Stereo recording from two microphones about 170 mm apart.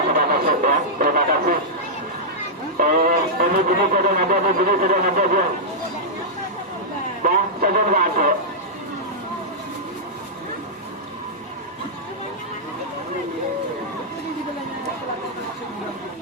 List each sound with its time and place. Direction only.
0.1 s a sound: 60° right (ahead or behind)
2.7 s speech: 55° right (ahead or behind)
7.2 s speech: 50° right (ahead or behind)